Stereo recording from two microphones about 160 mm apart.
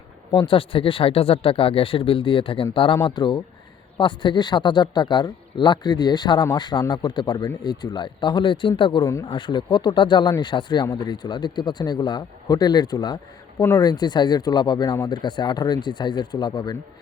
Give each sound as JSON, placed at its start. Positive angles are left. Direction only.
{"t": 0.3, "sound": "speech", "side_deg": 30}